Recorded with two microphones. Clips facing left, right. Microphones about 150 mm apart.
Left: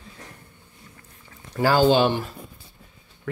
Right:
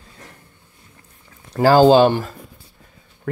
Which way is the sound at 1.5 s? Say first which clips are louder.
Right 7 dB; 40° right (ahead or behind).